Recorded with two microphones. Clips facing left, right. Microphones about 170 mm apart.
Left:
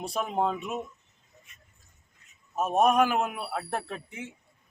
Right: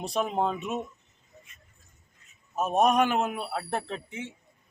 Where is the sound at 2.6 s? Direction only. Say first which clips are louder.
Even; 5° left (ahead or behind).